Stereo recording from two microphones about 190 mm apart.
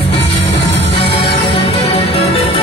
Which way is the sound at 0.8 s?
30° left (ahead or behind).